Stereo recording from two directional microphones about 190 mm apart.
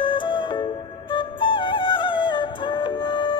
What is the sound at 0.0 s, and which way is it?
Music, 25° left (ahead or behind).